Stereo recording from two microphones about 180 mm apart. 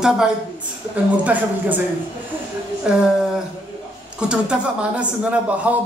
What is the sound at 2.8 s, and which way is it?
Speech, 5° right (ahead or behind).